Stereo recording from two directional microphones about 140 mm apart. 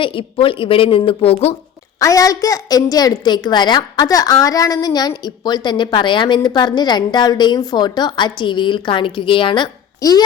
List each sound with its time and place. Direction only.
0.0 s a woman's voice: 40° left (ahead or behind)
2.0 s a woman's voice: 25° left (ahead or behind)